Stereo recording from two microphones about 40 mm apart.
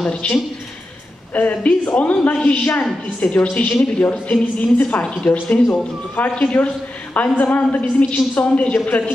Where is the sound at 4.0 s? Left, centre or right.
Left.